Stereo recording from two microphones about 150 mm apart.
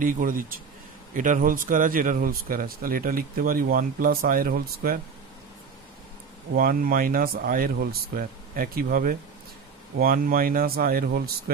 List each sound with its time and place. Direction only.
0.0 s speech: 65° right (ahead or behind)
6.5 s speech: 75° right (ahead or behind)